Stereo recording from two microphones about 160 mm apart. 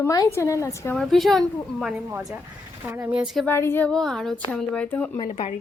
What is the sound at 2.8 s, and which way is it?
Speech, 10° right (ahead or behind).